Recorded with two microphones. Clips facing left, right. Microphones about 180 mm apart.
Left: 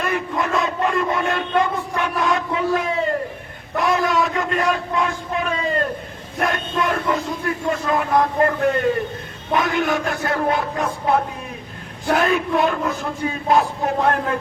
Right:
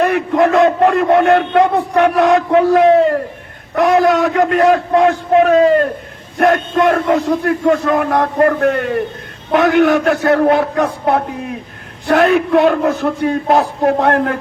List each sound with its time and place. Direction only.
0.0 s speech: 70° right (ahead or behind)
3.8 s speech: 85° right; by 14.3 s 65° right (ahead or behind)